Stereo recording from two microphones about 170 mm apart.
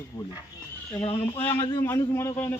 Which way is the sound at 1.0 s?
35° left (ahead or behind).